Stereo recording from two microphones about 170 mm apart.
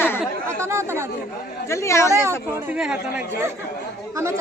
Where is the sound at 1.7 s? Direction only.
15° left (ahead or behind).